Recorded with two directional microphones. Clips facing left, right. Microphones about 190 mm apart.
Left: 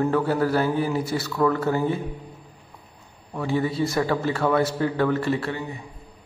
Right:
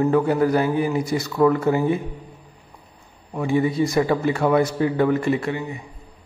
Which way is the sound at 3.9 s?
20° right (ahead or behind).